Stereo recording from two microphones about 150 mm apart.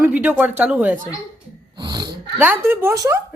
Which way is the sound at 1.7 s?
30° right (ahead or behind).